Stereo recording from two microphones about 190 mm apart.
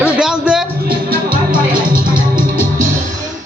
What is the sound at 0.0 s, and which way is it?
Music, 5° right (ahead or behind).